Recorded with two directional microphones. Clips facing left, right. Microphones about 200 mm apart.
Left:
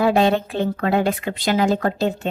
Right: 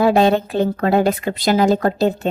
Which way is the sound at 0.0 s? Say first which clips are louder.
Right 3 dB; 40° right (ahead or behind).